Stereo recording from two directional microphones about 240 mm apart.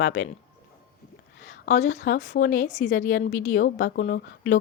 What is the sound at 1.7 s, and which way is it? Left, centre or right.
Speech, left.